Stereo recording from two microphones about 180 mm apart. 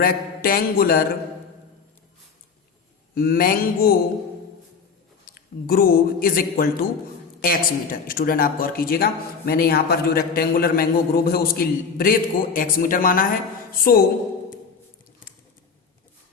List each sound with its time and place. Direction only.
0.0 s a man's voice: 55° left (ahead or behind)
3.2 s a man's voice: 55° left (ahead or behind)
5.2 s a man's voice: 55° left (ahead or behind)